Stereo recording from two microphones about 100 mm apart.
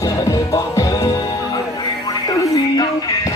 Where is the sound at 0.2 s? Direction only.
40° left (ahead or behind).